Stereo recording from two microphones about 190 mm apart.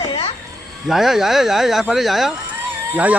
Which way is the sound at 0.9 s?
Centre (ahead or behind).